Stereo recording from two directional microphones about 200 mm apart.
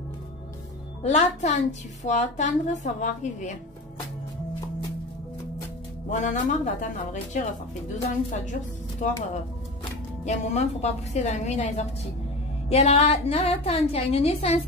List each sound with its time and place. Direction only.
1.0 s a woman's voice: 35° left (ahead or behind)
6.0 s a woman's voice: 40° left (ahead or behind)
8.0 s a woman's voice: 40° left (ahead or behind)
10.2 s a woman's voice: 35° left (ahead or behind)